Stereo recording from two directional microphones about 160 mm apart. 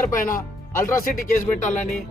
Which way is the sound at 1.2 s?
55° left (ahead or behind).